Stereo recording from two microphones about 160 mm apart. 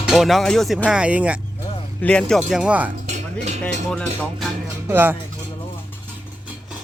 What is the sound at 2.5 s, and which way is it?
Speech, 5° right (ahead or behind).